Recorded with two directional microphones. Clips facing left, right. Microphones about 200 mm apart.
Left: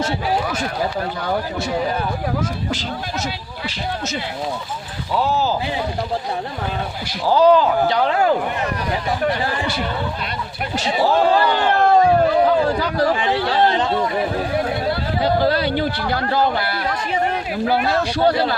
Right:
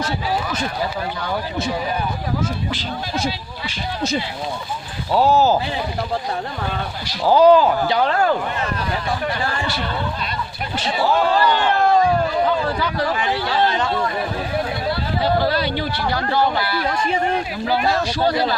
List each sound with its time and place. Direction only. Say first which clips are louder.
5.1 s speech: right 4 dB; 40° right (ahead or behind)
7.3 s speech: right 2 dB; 10° right (ahead or behind)
8.0 s speech: left 1 dB; 10° left (ahead or behind)
10.8 s a man's voice: left 2 dB; 40° left (ahead or behind)
11.7 s a sound: left 4 dB; 60° left (ahead or behind)
12.6 s speech: left 3 dB; 40° left (ahead or behind)
13.8 s speech: left 2 dB; 20° left (ahead or behind)
15.2 s a man's voice: left 2 dB; 50° left (ahead or behind)